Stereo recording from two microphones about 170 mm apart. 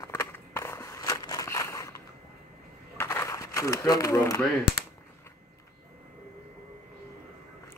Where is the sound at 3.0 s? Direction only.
15° left (ahead or behind).